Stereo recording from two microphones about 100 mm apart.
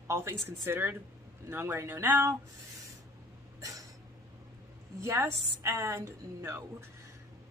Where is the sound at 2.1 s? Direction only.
30° right (ahead or behind).